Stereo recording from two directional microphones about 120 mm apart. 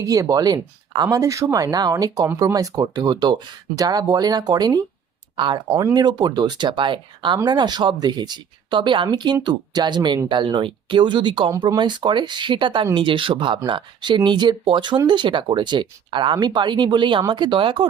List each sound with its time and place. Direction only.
0.0 s speech: 30° right (ahead or behind)